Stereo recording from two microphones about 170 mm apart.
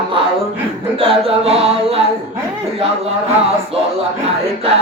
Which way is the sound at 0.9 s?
35° right (ahead or behind).